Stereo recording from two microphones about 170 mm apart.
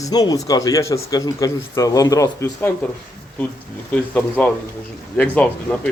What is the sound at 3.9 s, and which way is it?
Speech, 5° left (ahead or behind).